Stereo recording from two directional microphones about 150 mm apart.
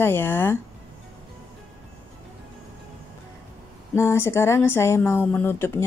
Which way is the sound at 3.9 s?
15° left (ahead or behind).